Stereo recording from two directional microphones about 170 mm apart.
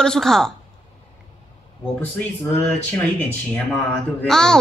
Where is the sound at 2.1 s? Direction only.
10° left (ahead or behind).